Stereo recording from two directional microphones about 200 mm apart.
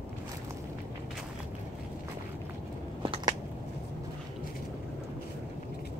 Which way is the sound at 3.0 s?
25° right (ahead or behind).